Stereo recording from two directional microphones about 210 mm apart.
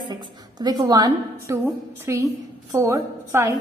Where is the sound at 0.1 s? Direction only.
20° right (ahead or behind).